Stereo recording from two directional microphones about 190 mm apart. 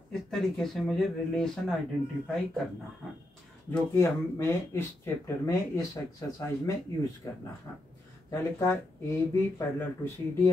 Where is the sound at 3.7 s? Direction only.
15° left (ahead or behind).